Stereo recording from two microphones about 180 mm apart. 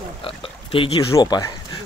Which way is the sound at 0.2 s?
30° left (ahead or behind).